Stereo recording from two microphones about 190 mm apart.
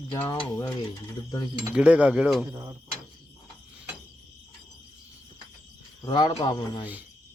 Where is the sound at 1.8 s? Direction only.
5° right (ahead or behind).